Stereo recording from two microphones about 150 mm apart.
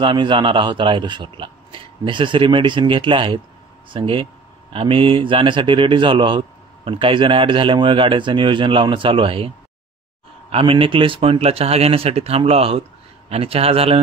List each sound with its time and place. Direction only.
0.0 s speech: 35° right (ahead or behind)
10.5 s speech: 35° right (ahead or behind)